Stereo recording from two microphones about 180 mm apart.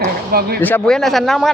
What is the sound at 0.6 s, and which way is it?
Speech, 5° left (ahead or behind).